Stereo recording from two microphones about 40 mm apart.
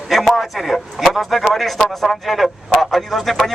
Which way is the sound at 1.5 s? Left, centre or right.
Centre.